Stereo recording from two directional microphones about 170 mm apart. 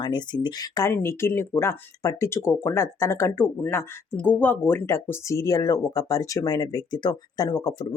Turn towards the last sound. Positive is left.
turn(degrees=20)  # may be behind; listen again after turning